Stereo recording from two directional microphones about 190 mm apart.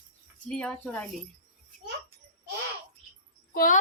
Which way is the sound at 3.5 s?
45° left (ahead or behind).